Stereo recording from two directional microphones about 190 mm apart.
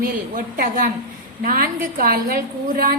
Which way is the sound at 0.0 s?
50° right (ahead or behind).